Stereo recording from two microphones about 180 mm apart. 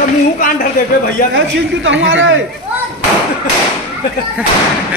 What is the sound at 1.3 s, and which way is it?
A woman's voice, 90° right.